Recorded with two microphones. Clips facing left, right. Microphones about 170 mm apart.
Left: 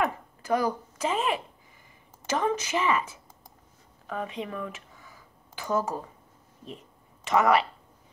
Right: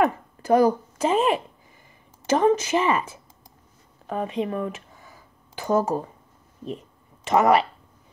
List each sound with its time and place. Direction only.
0.0 s a sound: 40° right (ahead or behind)
0.9 s speech: 40° right (ahead or behind)
7.2 s speech: 40° right (ahead or behind)